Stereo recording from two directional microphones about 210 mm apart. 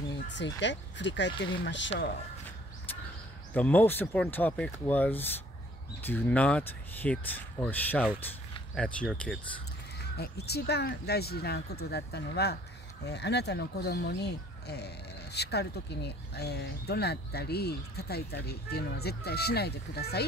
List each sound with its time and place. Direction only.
0.6 s speech: 55° left (ahead or behind)
3.5 s speech: 10° left (ahead or behind)
10.1 s speech: 50° left (ahead or behind)